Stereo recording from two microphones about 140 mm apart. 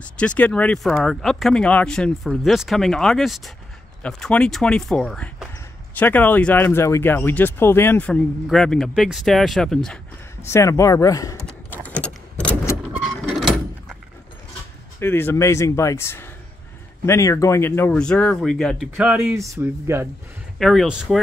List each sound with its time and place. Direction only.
0.0 s speech: 10° left (ahead or behind)
8.1 s speech: 5° left (ahead or behind)
10.4 s speech: 20° left (ahead or behind)
11.7 s a sound: 10° left (ahead or behind)
13.2 s door: centre (ahead or behind)
15.0 s speech: 15° left (ahead or behind)
18.9 s speech: 15° right (ahead or behind)
20.5 s speech: centre (ahead or behind)